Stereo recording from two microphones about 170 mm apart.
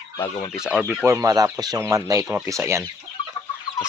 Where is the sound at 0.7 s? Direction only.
Centre (ahead or behind).